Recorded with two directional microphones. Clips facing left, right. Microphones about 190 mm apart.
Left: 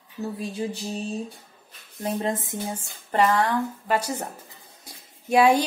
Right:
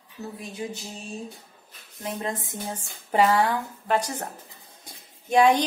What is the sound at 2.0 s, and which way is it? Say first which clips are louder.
Speech: left 4 dB; 25° left (ahead or behind).